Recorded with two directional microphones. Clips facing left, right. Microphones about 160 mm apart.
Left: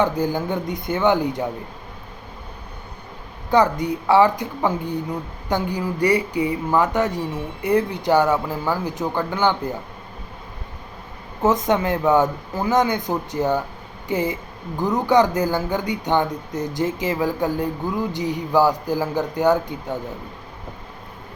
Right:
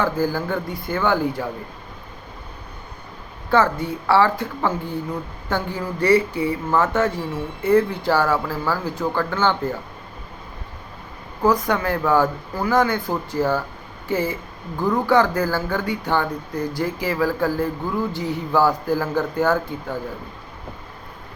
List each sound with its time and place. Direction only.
0.0 s speech: 20° left (ahead or behind)
3.5 s speech: 15° left (ahead or behind)
11.4 s speech: 20° left (ahead or behind)